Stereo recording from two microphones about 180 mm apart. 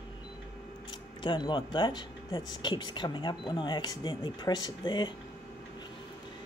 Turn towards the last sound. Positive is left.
turn(degrees=25)  # may be behind; listen again after turning